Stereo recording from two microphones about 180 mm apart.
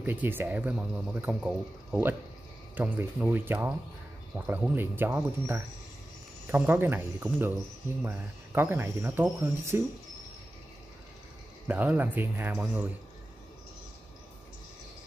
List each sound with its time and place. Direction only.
0.0 s speech: 10° right (ahead or behind)
11.6 s speech: 10° right (ahead or behind)